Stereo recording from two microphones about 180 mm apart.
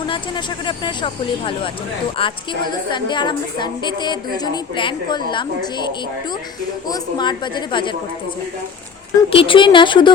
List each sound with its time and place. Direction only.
0.0 s a woman's voice: 25° left (ahead or behind)
9.3 s a woman's voice: 30° left (ahead or behind)